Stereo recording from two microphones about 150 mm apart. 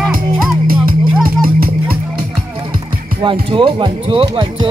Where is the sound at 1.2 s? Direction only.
75° right (ahead or behind).